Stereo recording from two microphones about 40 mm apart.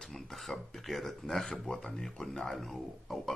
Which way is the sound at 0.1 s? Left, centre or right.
Centre.